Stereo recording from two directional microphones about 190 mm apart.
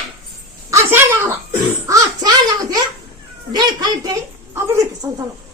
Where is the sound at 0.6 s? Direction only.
15° right (ahead or behind).